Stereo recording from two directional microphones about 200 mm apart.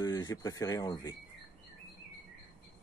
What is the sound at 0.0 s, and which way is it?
Speech, 20° left (ahead or behind).